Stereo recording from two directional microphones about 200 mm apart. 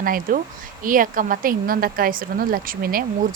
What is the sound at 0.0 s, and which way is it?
Speech, 45° right (ahead or behind).